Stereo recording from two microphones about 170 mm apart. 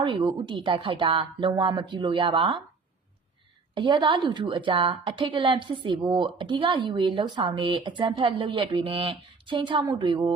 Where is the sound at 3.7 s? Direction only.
30° right (ahead or behind).